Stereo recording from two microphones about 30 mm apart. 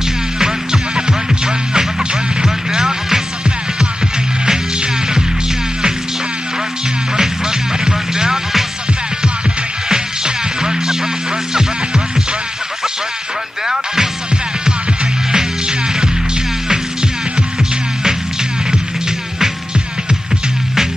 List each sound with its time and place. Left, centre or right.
0.4 s music: right
7.2 s music: right
9.8 s music: right
15.3 s music: right